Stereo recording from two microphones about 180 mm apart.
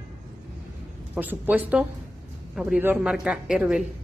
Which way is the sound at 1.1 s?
10° right (ahead or behind).